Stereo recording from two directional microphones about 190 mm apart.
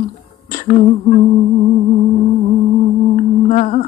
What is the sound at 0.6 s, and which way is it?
Humming, 35° left (ahead or behind).